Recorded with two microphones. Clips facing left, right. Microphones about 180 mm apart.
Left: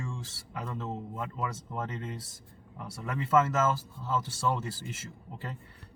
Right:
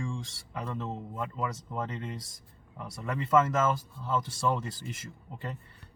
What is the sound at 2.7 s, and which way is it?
Speech, centre (ahead or behind).